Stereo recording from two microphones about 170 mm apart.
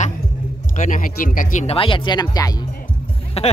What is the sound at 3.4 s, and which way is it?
Speech, 35° left (ahead or behind).